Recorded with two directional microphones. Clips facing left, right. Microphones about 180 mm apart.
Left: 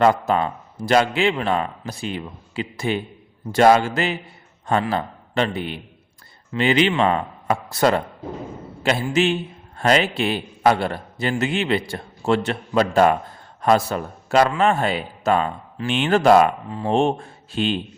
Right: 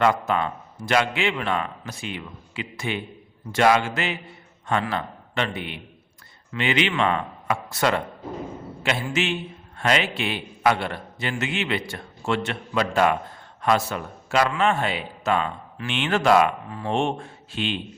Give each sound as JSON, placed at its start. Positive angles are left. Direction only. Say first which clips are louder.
{"t": 0.0, "sound": "a man's voice", "louder": "left 4 dB", "side_deg": 35}